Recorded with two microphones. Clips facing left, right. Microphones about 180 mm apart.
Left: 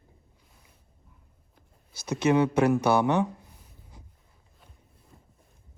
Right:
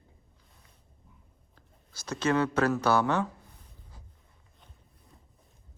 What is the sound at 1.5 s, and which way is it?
Speech, 10° left (ahead or behind).